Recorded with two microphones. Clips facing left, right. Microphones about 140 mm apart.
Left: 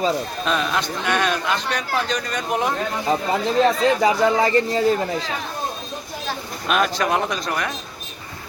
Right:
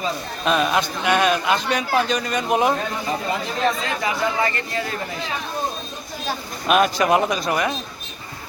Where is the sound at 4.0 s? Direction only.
30° left (ahead or behind).